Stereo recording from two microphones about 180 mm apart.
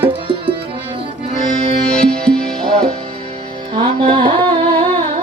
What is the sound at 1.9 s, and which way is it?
Music, 5° left (ahead or behind).